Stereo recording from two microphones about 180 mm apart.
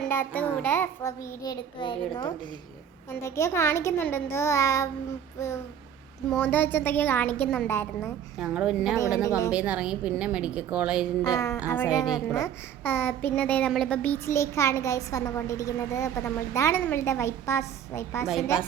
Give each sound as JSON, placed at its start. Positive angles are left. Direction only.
{"t": 0.1, "sound": "a child's voice", "side_deg": 10}
{"t": 3.2, "sound": "a child's voice", "side_deg": 15}
{"t": 8.4, "sound": "a woman's voice", "side_deg": -5}
{"t": 9.2, "sound": "a woman's voice", "side_deg": 20}
{"t": 9.5, "sound": "a woman's voice", "side_deg": -5}
{"t": 11.2, "sound": "a child's voice", "side_deg": 20}